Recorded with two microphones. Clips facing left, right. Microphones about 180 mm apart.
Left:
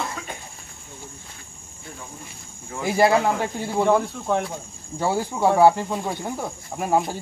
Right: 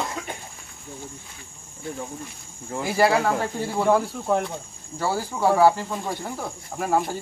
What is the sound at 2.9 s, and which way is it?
Speech, 15° left (ahead or behind).